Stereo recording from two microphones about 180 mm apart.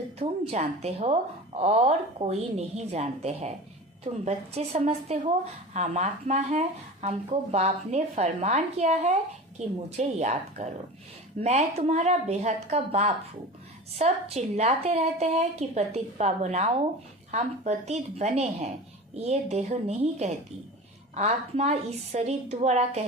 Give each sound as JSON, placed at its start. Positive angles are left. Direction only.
{"t": 0.2, "sound": "speech", "side_deg": -35}